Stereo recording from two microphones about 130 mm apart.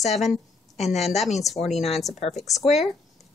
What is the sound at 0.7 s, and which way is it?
Speech, 55° left (ahead or behind).